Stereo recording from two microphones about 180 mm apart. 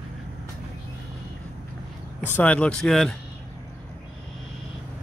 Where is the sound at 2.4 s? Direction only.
5° left (ahead or behind).